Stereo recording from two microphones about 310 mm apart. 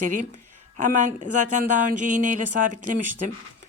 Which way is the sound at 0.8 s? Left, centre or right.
Right.